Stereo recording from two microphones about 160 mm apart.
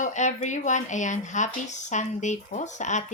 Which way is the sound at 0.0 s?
50° left (ahead or behind).